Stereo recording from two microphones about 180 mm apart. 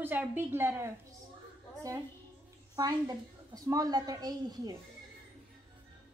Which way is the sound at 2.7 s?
20° right (ahead or behind).